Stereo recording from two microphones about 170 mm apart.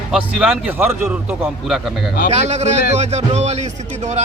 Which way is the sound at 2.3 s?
40° right (ahead or behind).